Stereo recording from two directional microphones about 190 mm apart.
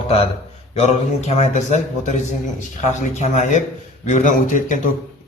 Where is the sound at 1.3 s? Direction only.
35° left (ahead or behind).